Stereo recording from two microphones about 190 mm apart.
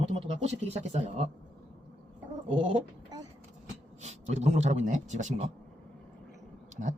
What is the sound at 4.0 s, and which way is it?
A man's voice, 35° right (ahead or behind).